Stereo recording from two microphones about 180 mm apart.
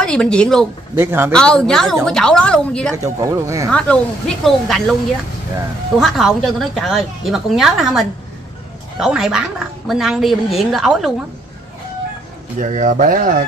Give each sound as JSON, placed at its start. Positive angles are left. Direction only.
{"t": 0.0, "sound": "a woman's voice", "side_deg": 5}
{"t": 0.9, "sound": "speech", "side_deg": -15}
{"t": 1.3, "sound": "a woman's voice", "side_deg": 5}
{"t": 3.0, "sound": "speech", "side_deg": -15}
{"t": 3.7, "sound": "a woman's voice", "side_deg": 5}
{"t": 5.9, "sound": "a woman's voice", "side_deg": 0}
{"t": 12.5, "sound": "speech", "side_deg": -45}